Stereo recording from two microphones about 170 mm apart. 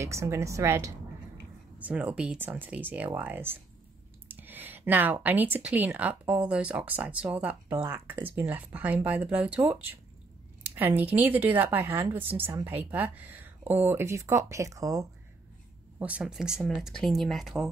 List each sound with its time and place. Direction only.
0.0 s speech: 15° right (ahead or behind)
10.6 s a sound: 10° right (ahead or behind)
11.1 s speech: 10° right (ahead or behind)
16.0 s speech: 5° right (ahead or behind)